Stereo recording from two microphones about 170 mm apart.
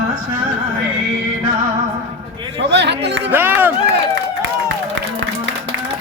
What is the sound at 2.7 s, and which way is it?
Speech, 90° right.